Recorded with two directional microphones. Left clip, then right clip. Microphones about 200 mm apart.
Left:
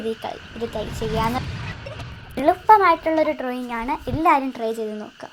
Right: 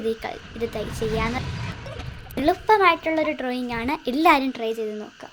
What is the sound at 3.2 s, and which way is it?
Speech, 25° right (ahead or behind).